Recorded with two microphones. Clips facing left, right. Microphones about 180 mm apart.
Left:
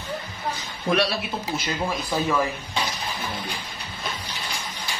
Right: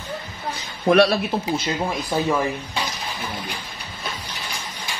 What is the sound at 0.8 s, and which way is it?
Speech, 55° right (ahead or behind).